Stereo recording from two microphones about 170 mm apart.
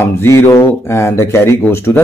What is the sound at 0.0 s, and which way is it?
Speech, 15° left (ahead or behind).